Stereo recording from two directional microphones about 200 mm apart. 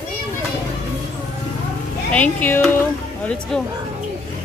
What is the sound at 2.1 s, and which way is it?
Speech, 10° left (ahead or behind).